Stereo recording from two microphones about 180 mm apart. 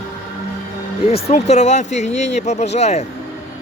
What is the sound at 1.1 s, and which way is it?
Speech, 35° left (ahead or behind).